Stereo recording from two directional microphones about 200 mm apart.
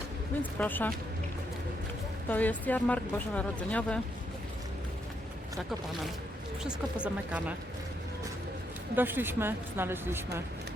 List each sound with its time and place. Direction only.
0.6 s speech: 10° left (ahead or behind)
2.3 s speech: 10° left (ahead or behind)
6.6 s speech: 5° right (ahead or behind)
9.0 s a woman's voice: 10° right (ahead or behind)